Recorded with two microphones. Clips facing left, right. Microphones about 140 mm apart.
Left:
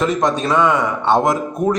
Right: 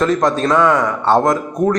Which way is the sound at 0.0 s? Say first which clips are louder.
Right 2 dB; centre (ahead or behind).